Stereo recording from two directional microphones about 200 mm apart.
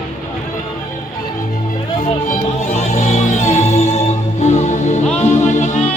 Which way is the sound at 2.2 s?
35° left (ahead or behind).